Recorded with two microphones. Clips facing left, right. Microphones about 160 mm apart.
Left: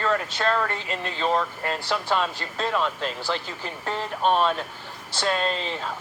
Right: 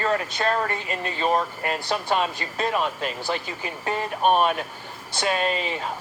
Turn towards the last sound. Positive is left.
turn(degrees=-15)  # may be behind; listen again after turning